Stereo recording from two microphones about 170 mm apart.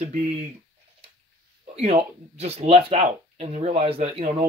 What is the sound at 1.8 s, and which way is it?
Speech, 35° right (ahead or behind).